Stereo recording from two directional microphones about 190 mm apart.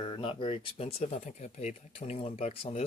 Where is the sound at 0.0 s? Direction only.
25° left (ahead or behind).